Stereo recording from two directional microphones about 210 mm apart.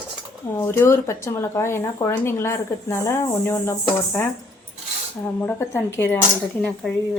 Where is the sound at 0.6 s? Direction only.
10° left (ahead or behind).